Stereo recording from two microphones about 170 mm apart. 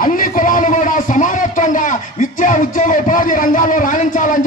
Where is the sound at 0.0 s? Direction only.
55° left (ahead or behind).